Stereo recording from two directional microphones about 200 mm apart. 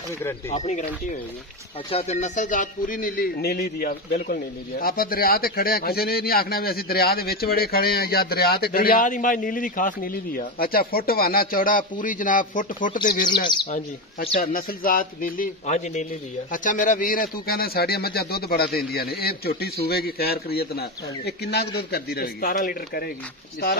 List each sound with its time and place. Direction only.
0.5 s a man's voice: 35° left (ahead or behind)
13.5 s speech: 25° left (ahead or behind)
14.4 s a man's voice: 45° left (ahead or behind)